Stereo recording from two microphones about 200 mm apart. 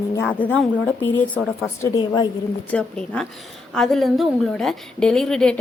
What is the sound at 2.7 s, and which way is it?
A woman's voice, 5° left (ahead or behind).